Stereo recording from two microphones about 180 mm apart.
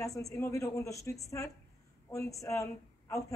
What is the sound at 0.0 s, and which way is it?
Speech, 20° left (ahead or behind).